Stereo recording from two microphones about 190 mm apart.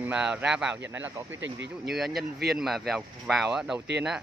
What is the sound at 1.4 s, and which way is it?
Speech, 65° right (ahead or behind).